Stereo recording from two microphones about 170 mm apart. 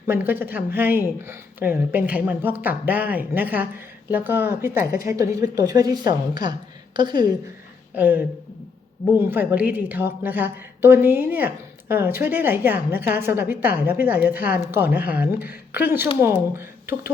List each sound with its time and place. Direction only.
0.1 s a woman's voice: 10° right (ahead or behind)
7.9 s a woman's voice: 10° right (ahead or behind)